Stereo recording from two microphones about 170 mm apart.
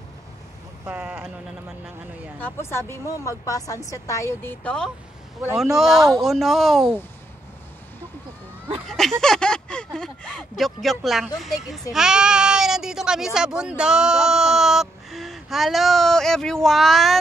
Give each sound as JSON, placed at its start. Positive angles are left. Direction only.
{"t": 0.8, "sound": "speech", "side_deg": -10}
{"t": 2.4, "sound": "speech", "side_deg": 15}
{"t": 8.8, "sound": "a sound", "side_deg": 0}
{"t": 9.9, "sound": "speech", "side_deg": 5}